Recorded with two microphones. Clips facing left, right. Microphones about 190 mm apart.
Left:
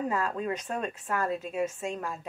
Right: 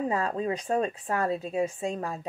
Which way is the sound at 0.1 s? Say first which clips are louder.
Right 2 dB; 35° right (ahead or behind).